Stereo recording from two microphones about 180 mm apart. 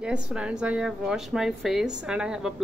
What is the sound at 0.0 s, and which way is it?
A woman's voice, 5° right (ahead or behind).